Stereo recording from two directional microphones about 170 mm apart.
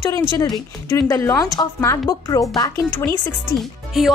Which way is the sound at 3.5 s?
Centre (ahead or behind).